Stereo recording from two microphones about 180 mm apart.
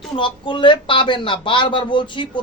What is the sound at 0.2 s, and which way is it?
A man's voice, 25° left (ahead or behind).